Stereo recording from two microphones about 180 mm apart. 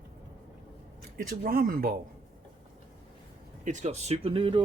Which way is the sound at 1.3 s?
55° right (ahead or behind).